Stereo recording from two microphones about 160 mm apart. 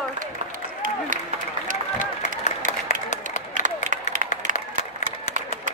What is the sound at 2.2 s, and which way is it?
Applause, 45° left (ahead or behind).